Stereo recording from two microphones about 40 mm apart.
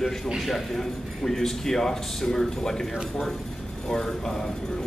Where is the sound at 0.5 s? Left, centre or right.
Centre.